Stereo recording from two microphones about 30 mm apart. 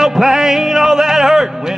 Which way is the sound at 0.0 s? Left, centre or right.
Centre.